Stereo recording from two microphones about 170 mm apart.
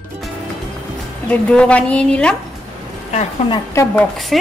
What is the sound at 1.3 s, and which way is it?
A woman's voice, 10° left (ahead or behind).